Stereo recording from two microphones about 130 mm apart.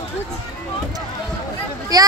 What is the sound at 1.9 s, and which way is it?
Speech, 30° right (ahead or behind).